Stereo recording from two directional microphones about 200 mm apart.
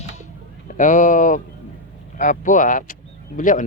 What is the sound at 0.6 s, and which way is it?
Speech, 40° left (ahead or behind).